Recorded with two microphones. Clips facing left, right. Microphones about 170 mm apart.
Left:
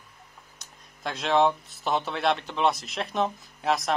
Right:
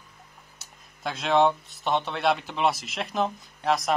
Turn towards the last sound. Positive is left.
turn(degrees=0)  # may be behind; listen again after turning